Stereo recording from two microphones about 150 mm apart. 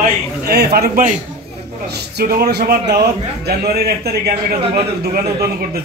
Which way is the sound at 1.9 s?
90° right.